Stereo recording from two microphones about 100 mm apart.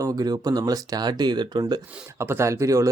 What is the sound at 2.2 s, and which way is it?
Speech, 25° right (ahead or behind).